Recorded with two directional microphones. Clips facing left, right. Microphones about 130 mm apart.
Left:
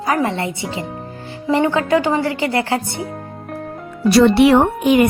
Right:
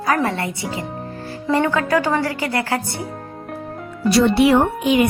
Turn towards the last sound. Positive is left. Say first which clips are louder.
# left 3 dB
turn(degrees=50)  # may be behind; listen again after turning